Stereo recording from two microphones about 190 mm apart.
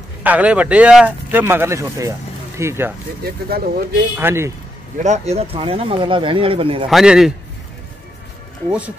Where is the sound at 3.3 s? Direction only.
55° right (ahead or behind).